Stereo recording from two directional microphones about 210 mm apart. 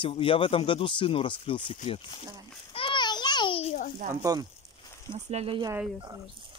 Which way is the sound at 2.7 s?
25° left (ahead or behind).